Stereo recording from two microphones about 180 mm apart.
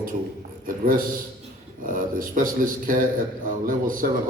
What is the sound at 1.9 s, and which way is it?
Speech, 50° right (ahead or behind).